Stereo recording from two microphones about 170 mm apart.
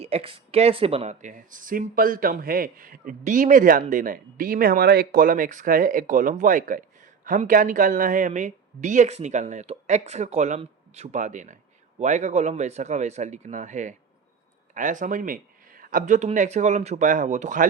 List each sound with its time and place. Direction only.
0.0 s speech: 35° right (ahead or behind)